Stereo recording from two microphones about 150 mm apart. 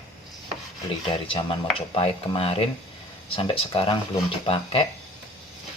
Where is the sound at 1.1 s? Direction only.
35° left (ahead or behind).